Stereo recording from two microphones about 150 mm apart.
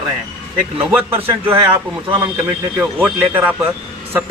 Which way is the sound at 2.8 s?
15° right (ahead or behind).